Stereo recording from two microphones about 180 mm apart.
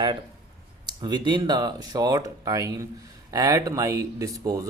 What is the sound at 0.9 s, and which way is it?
Speech, 25° right (ahead or behind).